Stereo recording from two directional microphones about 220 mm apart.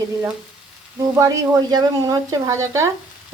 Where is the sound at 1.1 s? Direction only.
15° right (ahead or behind).